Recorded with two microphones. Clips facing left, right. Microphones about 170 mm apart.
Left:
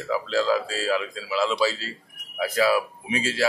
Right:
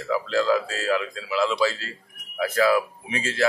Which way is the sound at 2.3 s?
15° left (ahead or behind).